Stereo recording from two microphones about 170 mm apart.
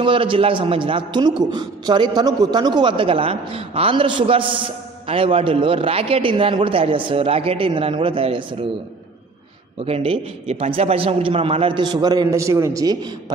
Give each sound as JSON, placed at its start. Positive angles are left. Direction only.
{"t": 0.0, "sound": "a man's voice", "side_deg": -30}
{"t": 9.8, "sound": "a man's voice", "side_deg": -35}